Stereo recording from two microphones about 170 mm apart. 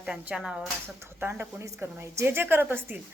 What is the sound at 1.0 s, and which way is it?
A woman's voice, 15° right (ahead or behind).